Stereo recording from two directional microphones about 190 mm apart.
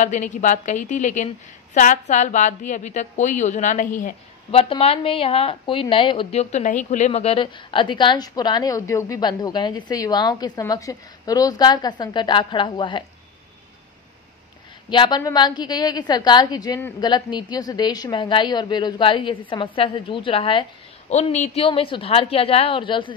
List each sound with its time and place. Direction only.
0.0 s a woman's voice: 40° left (ahead or behind)
4.5 s a woman's voice: 30° left (ahead or behind)
6.5 s a woman's voice: 40° left (ahead or behind); by 13.0 s 25° left (ahead or behind)
14.9 s a woman's voice: 25° left (ahead or behind)